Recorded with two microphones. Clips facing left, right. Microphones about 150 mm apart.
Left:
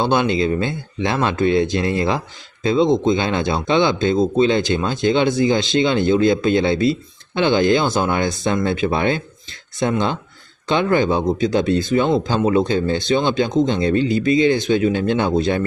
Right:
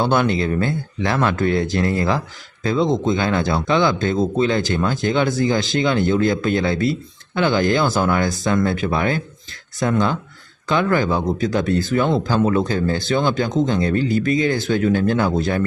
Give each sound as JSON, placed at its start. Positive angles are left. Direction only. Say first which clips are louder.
{"t": 0.0, "sound": "speech", "louder": "left 1 dB", "side_deg": 20}